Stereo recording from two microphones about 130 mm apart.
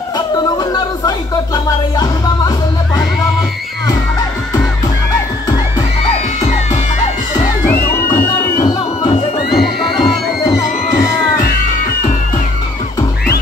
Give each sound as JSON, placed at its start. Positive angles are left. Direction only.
{"t": 0.6, "sound": "music", "side_deg": 30}
{"t": 7.9, "sound": "music", "side_deg": 20}
{"t": 9.5, "sound": "music", "side_deg": 0}